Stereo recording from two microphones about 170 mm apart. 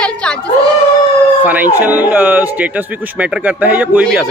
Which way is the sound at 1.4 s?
10° right (ahead or behind).